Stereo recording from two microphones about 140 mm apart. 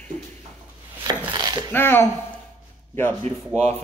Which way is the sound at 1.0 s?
30° right (ahead or behind).